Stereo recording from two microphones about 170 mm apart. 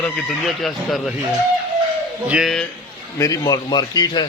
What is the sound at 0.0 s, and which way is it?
Music, centre (ahead or behind).